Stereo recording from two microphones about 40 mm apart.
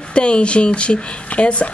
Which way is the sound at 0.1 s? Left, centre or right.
Left.